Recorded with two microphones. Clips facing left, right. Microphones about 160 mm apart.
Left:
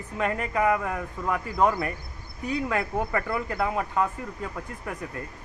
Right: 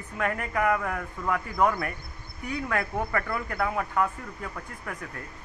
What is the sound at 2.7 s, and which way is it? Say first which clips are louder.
Speech: right 1 dB; 5° left (ahead or behind).